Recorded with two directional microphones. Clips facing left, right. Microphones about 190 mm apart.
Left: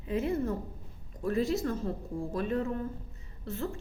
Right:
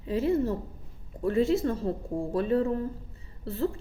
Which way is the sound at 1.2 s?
30° right (ahead or behind).